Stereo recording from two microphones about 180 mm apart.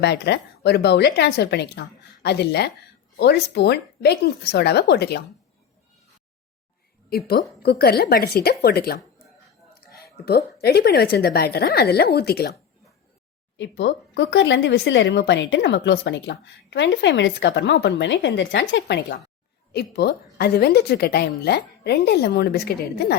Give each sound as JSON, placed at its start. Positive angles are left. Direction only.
{"t": 0.0, "sound": "a woman's voice", "side_deg": 65}
{"t": 7.1, "sound": "a woman's voice", "side_deg": 60}
{"t": 13.6, "sound": "a woman's voice", "side_deg": 90}